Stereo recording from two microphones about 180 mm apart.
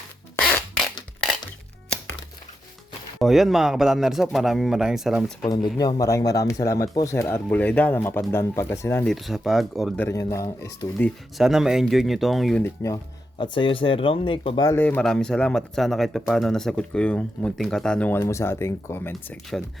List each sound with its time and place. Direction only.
0.4 s a sound: 5° left (ahead or behind)
3.2 s speech: centre (ahead or behind)
5.5 s speech: 20° left (ahead or behind)
9.1 s speech: centre (ahead or behind)
10.1 s speech: 20° left (ahead or behind)
10.9 s speech: 5° left (ahead or behind)
12.6 s speech: 15° left (ahead or behind)